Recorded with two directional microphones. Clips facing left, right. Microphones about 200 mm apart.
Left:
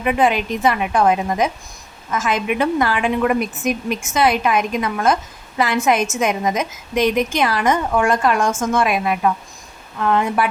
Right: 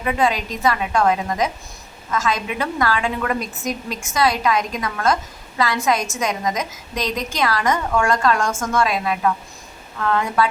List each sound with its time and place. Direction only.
0.0 s a woman's voice: 15° left (ahead or behind)